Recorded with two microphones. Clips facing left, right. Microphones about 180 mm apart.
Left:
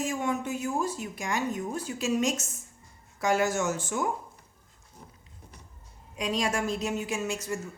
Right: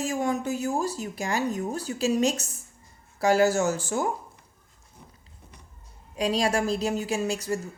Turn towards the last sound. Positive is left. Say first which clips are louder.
# right 4 dB
turn(degrees=-35)  # may be behind; listen again after turning